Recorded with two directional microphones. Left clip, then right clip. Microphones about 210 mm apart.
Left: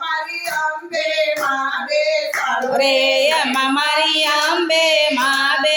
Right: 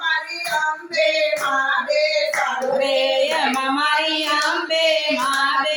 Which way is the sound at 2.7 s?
45° left (ahead or behind).